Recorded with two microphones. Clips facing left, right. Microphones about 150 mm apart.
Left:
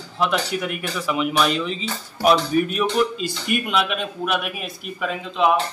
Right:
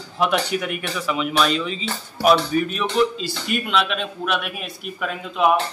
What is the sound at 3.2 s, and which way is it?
Speech, 50° left (ahead or behind).